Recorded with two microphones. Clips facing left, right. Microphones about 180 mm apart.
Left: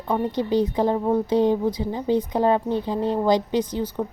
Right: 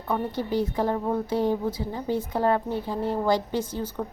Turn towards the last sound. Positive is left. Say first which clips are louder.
# left 5 dB
turn(degrees=15)  # may be behind; listen again after turning